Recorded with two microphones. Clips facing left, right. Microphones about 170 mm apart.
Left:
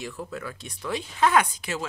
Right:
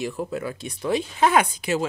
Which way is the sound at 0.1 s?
20° right (ahead or behind).